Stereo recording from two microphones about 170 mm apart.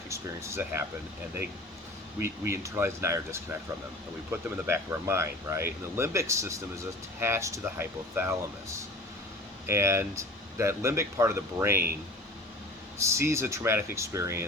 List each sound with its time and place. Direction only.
0.1 s speech: 15° right (ahead or behind)
2.2 s speech: 15° right (ahead or behind)
9.6 s speech: 15° right (ahead or behind)
13.1 s speech: 15° right (ahead or behind)